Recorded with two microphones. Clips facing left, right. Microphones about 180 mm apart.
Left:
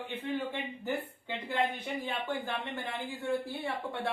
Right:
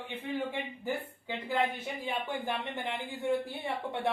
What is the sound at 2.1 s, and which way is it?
Speech, 15° right (ahead or behind).